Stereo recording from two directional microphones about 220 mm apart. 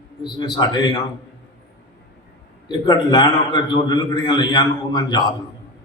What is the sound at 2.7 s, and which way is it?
A man's voice, 20° left (ahead or behind).